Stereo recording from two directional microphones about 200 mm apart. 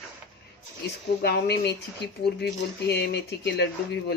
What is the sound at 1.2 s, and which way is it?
Speech, 55° left (ahead or behind).